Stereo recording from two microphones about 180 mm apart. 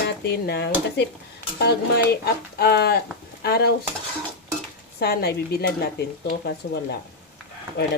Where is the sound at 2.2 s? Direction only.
60° left (ahead or behind).